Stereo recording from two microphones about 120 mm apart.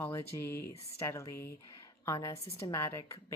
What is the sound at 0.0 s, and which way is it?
Speech, 20° left (ahead or behind).